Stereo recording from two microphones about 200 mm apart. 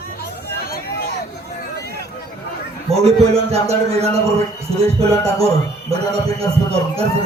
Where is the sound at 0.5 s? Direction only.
50° left (ahead or behind).